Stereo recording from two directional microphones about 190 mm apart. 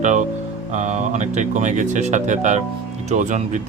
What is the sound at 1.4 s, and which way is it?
Speech, 40° right (ahead or behind).